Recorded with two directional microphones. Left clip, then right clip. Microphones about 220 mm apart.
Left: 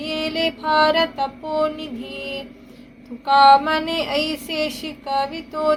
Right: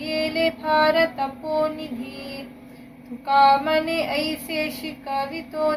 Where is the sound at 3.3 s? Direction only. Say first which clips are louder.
Left 4 dB; 20° left (ahead or behind).